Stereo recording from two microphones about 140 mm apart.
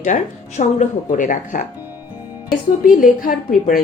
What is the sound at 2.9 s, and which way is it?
Speech, 75° left (ahead or behind).